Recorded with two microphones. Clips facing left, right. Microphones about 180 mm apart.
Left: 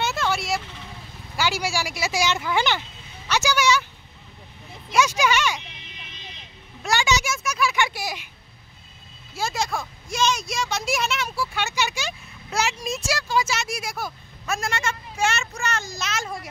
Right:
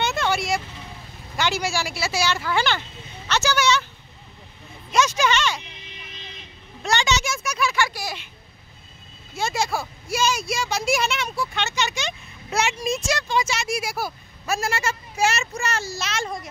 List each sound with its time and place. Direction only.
0.0 s vehicle: centre (ahead or behind)
1.3 s a woman's voice: 10° left (ahead or behind)
4.9 s speech: 10° left (ahead or behind)
6.8 s vehicle: 10° left (ahead or behind)
7.3 s a sound: centre (ahead or behind)
7.7 s a sound: 20° left (ahead or behind)
9.4 s speech: centre (ahead or behind)